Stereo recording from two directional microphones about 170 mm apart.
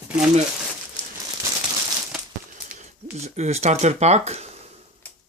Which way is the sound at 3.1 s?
40° right (ahead or behind).